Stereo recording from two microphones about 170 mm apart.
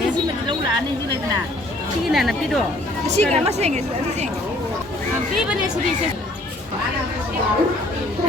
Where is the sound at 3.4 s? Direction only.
40° right (ahead or behind).